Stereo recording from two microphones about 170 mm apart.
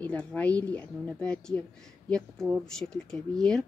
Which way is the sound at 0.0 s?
5° left (ahead or behind).